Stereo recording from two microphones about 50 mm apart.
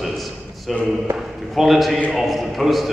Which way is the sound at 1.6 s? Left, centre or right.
Centre.